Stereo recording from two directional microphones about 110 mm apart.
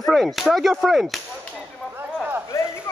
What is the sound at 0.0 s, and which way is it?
Speech, centre (ahead or behind).